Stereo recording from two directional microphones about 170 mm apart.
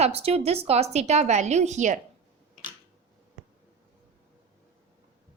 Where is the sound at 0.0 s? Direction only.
35° right (ahead or behind).